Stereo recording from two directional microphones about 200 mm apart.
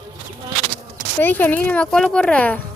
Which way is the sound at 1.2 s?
10° left (ahead or behind).